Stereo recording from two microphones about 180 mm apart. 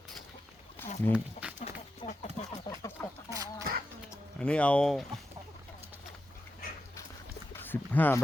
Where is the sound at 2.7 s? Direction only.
30° left (ahead or behind).